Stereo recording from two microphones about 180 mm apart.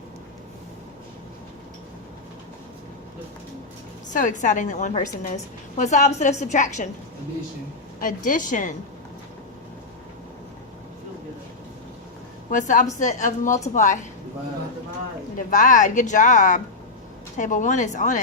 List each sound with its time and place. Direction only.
4.1 s a woman's voice: 45° left (ahead or behind)
8.0 s a woman's voice: 50° left (ahead or behind)
12.5 s a woman's voice: 45° left (ahead or behind)
15.4 s a woman's voice: 45° left (ahead or behind)